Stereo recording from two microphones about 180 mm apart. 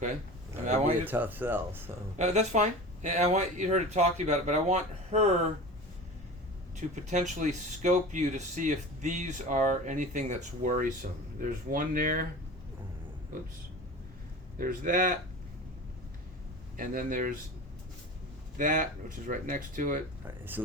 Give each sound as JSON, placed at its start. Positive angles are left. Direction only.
{"t": 0.6, "sound": "speech", "side_deg": -40}
{"t": 1.0, "sound": "speech", "side_deg": -10}
{"t": 2.1, "sound": "speech", "side_deg": -40}
{"t": 6.7, "sound": "speech", "side_deg": -40}
{"t": 14.6, "sound": "speech", "side_deg": -50}
{"t": 16.7, "sound": "speech", "side_deg": -50}
{"t": 18.5, "sound": "speech", "side_deg": -45}
{"t": 20.2, "sound": "speech", "side_deg": -10}